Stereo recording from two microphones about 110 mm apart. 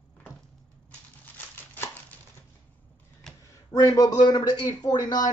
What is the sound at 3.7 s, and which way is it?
Speech, 35° left (ahead or behind).